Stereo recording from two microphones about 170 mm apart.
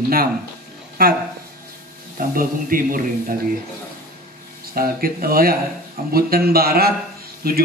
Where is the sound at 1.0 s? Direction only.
60° right (ahead or behind).